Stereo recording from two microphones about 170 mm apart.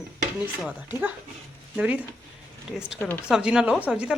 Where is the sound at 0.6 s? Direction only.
10° right (ahead or behind).